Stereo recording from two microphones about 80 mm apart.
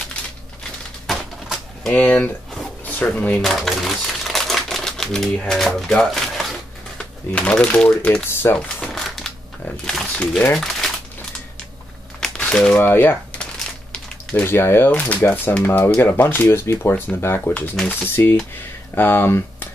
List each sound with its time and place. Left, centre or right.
1.9 s speech: centre
3.4 s typewriter: centre
7.3 s speech: centre
8.1 s speech: left
8.8 s a sound: centre
9.8 s speech: centre
12.2 s crumpling: centre
12.8 s speech: left
14.4 s speech: left
14.9 s speech: centre